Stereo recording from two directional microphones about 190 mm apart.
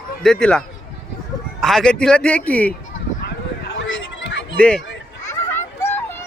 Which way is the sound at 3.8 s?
75° left (ahead or behind).